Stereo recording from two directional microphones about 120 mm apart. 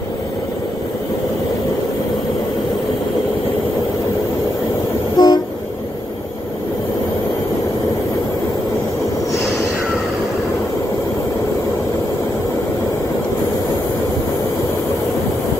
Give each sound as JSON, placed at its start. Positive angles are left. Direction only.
{"t": 5.1, "sound": "train", "side_deg": 35}